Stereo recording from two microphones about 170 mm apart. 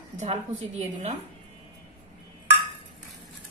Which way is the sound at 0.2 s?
40° right (ahead or behind).